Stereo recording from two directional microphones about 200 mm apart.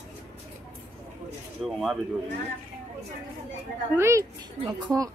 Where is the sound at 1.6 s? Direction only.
Centre (ahead or behind).